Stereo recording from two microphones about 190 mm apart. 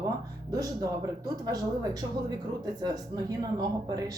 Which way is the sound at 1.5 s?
20° right (ahead or behind).